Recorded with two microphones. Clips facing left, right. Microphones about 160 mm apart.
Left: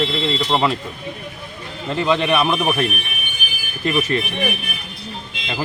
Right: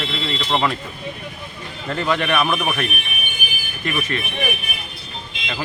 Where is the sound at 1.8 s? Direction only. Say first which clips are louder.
Left 3 dB; 15° left (ahead or behind).